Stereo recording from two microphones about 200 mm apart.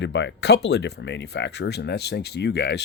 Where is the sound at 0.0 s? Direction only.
65° left (ahead or behind).